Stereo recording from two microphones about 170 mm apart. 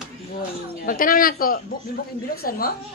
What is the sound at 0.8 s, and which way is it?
A woman's voice, 55° left (ahead or behind).